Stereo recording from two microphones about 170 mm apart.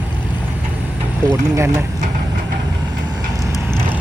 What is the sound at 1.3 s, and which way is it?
Speech, 15° right (ahead or behind).